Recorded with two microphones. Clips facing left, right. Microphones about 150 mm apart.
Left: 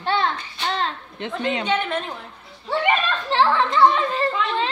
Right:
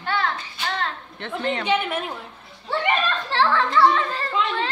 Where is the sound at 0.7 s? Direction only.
20° left (ahead or behind).